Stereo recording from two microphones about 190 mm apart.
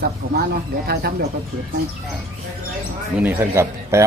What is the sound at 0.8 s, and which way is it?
Speech, 55° right (ahead or behind).